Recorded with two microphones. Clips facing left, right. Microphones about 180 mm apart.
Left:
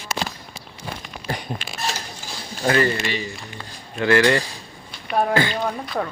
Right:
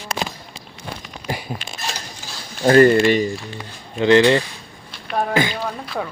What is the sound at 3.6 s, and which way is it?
Speech, 15° right (ahead or behind).